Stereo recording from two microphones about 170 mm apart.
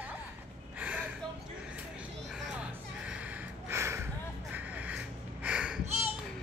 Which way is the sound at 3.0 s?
5° right (ahead or behind).